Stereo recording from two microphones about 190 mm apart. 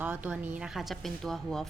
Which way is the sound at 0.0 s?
10° right (ahead or behind).